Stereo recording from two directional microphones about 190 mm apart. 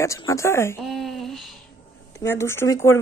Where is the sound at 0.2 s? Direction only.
15° left (ahead or behind).